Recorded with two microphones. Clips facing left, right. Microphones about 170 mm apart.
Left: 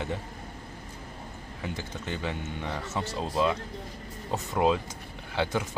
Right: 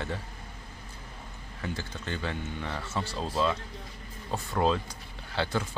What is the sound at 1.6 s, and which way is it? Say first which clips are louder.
Speech: even; 15° left (ahead or behind).